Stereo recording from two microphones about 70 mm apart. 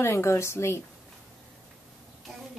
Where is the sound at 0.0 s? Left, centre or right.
Left.